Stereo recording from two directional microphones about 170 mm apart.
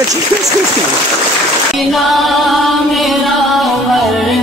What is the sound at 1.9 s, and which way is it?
Music, centre (ahead or behind).